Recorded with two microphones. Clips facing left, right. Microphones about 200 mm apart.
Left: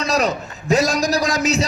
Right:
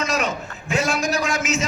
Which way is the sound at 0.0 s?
35° left (ahead or behind).